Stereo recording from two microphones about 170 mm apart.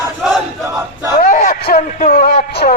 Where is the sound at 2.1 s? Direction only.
70° left (ahead or behind).